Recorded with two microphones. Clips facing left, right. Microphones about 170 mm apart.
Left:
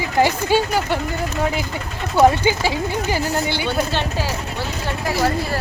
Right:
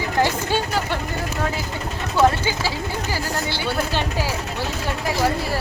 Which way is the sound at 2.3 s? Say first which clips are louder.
Left 5 dB; 15° left (ahead or behind).